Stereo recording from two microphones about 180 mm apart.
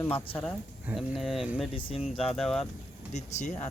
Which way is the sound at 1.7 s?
30° left (ahead or behind).